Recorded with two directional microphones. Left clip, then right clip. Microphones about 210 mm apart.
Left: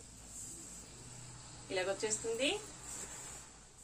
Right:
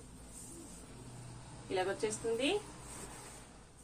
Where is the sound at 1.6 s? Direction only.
15° left (ahead or behind).